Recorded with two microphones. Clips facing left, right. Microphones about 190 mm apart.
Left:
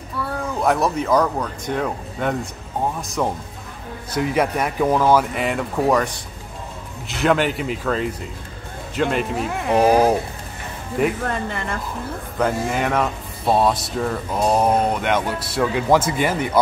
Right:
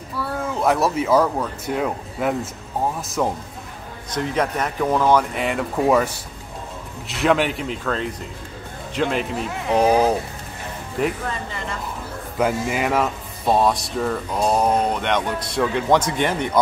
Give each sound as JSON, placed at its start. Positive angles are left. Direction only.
{"t": 0.2, "sound": "speech", "side_deg": 0}
{"t": 4.1, "sound": "speech", "side_deg": 10}
{"t": 11.2, "sound": "speech", "side_deg": 55}
{"t": 12.4, "sound": "speech", "side_deg": -5}